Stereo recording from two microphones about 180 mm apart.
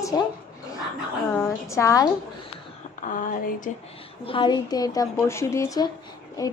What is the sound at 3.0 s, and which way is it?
Speech, 50° left (ahead or behind).